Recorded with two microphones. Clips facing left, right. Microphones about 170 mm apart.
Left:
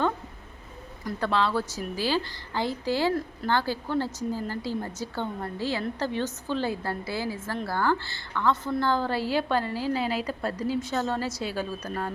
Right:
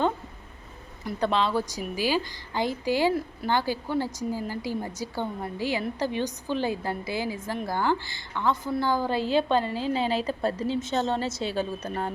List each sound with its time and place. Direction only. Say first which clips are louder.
1.0 s a woman's voice: right 1 dB; 20° right (ahead or behind)